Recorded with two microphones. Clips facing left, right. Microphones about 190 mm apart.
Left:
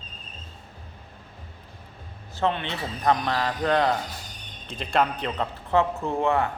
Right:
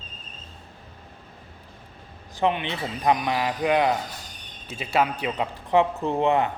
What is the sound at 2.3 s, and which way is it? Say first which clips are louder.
Speech: right 2 dB; 15° right (ahead or behind).